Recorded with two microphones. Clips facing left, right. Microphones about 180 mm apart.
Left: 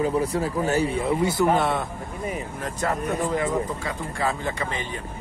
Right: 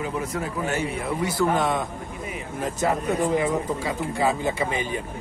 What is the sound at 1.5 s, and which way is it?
Speech, 10° left (ahead or behind).